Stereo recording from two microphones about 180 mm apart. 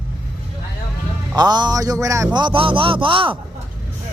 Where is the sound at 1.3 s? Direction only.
25° right (ahead or behind).